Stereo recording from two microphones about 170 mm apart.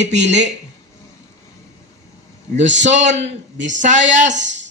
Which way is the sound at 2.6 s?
45° right (ahead or behind).